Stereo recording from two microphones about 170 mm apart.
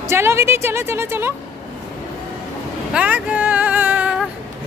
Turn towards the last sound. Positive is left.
turn(degrees=-5)  # may be behind; listen again after turning